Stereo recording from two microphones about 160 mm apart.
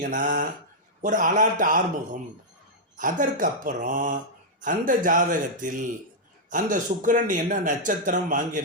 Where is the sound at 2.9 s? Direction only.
55° right (ahead or behind).